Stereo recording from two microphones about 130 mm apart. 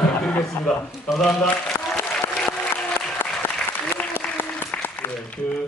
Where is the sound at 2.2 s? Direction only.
15° left (ahead or behind).